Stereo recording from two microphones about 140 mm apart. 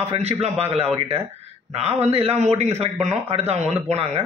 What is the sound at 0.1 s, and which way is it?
Speech, 50° right (ahead or behind).